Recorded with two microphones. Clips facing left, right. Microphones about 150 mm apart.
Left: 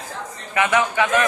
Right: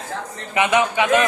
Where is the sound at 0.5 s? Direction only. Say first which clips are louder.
Right 1 dB; 20° right (ahead or behind).